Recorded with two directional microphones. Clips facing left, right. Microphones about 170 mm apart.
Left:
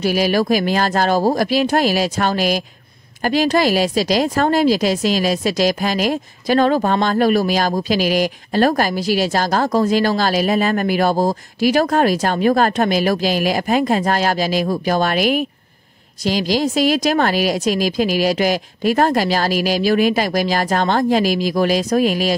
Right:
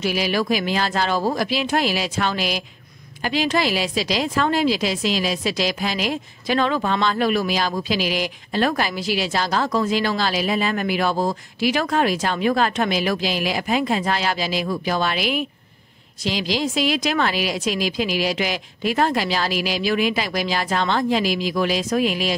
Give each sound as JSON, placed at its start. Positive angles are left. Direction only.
{"t": 0.0, "sound": "a woman's voice", "side_deg": 40}